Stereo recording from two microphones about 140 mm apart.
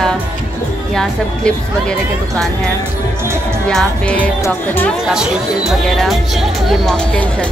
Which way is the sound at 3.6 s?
10° left (ahead or behind).